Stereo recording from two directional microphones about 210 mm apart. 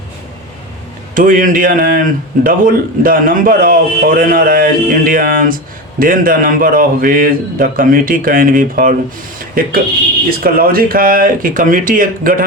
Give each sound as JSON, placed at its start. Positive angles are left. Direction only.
{"t": 1.1, "sound": "a man's voice", "side_deg": -40}